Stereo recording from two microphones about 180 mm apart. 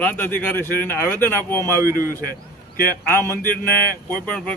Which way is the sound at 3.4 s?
55° left (ahead or behind).